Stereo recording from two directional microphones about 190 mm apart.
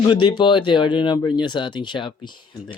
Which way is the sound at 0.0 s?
25° left (ahead or behind).